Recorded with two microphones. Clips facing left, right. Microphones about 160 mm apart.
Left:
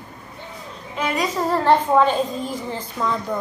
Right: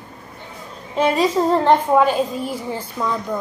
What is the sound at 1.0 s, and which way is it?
Speech, 30° right (ahead or behind).